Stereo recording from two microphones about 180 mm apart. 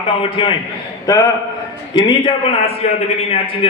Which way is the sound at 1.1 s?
20° left (ahead or behind).